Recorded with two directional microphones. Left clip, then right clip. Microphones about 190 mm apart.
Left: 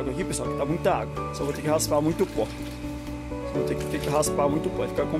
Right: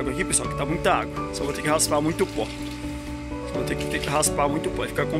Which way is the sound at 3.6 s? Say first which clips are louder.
Right 1 dB; 10° left (ahead or behind).